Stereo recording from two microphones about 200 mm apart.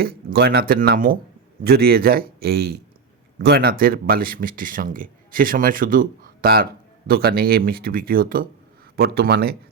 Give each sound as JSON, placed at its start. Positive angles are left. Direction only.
{"t": 0.0, "sound": "speech", "side_deg": -50}